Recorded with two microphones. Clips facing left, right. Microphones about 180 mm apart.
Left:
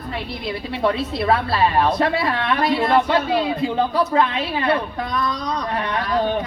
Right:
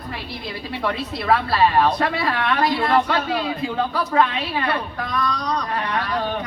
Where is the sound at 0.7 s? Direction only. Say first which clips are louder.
Left 4 dB; 25° left (ahead or behind).